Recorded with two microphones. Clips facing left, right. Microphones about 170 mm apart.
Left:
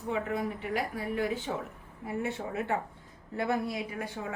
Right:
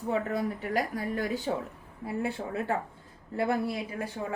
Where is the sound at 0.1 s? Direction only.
40° right (ahead or behind).